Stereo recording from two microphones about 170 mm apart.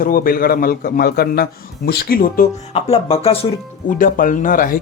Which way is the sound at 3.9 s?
55° left (ahead or behind).